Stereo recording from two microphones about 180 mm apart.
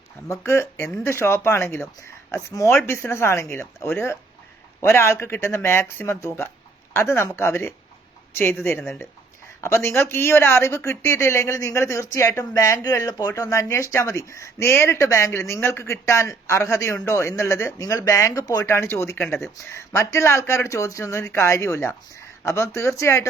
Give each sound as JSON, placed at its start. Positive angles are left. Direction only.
{"t": 0.3, "sound": "speech", "side_deg": 15}